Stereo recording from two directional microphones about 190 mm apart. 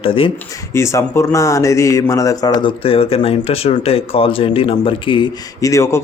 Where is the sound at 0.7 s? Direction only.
15° left (ahead or behind).